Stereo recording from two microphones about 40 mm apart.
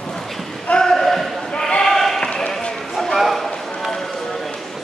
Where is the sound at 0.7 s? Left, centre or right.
Centre.